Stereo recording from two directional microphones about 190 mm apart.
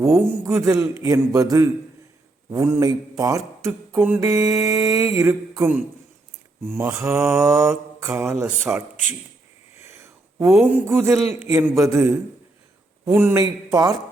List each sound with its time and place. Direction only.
0.4 s speech: 15° right (ahead or behind)
9.8 s a sound: 15° right (ahead or behind)
10.4 s speech: 5° right (ahead or behind)